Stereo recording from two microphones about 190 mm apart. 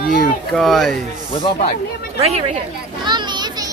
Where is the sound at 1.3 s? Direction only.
30° left (ahead or behind).